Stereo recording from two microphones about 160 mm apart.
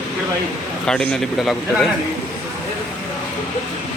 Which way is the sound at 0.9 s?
5° left (ahead or behind).